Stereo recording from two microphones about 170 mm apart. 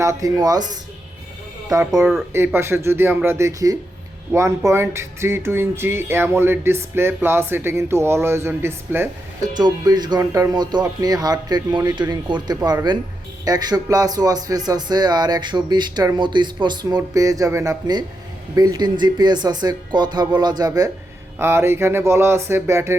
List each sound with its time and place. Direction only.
0.0 s speech: 20° right (ahead or behind)
9.6 s speech: 25° right (ahead or behind)